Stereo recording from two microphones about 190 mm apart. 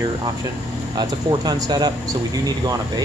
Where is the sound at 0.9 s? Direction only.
20° right (ahead or behind).